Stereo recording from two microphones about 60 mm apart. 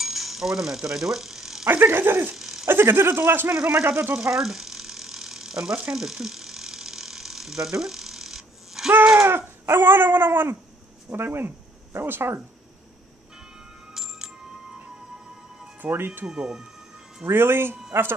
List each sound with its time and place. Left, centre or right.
0.0 s mechanisms: centre
1.7 s speech: right
2.3 s a sound: centre
2.6 s speech: right
3.5 s speech: centre
4.1 s mechanisms: centre
9.1 s dog: right
9.7 s speech: right
13.9 s music: centre
15.8 s speech: right
16.3 s speech: centre
17.3 s speech: right